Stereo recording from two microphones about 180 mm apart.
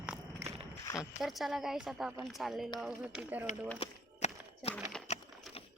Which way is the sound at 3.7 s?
35° left (ahead or behind).